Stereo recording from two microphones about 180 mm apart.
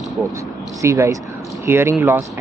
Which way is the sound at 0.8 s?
15° right (ahead or behind).